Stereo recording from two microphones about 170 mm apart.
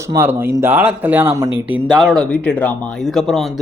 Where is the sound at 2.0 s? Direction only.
5° left (ahead or behind).